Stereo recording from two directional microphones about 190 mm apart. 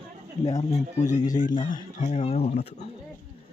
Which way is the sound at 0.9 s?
40° left (ahead or behind).